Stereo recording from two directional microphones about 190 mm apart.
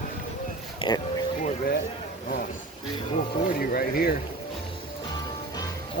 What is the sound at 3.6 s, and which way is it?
Speech, 50° left (ahead or behind).